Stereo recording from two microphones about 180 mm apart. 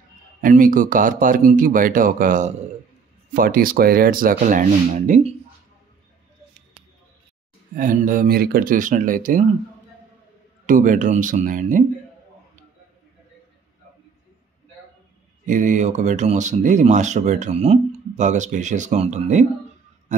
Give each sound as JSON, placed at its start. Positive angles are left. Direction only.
{"t": 0.4, "sound": "speech", "side_deg": -50}
{"t": 7.7, "sound": "speech", "side_deg": -50}
{"t": 10.7, "sound": "speech", "side_deg": -45}
{"t": 15.4, "sound": "speech", "side_deg": -45}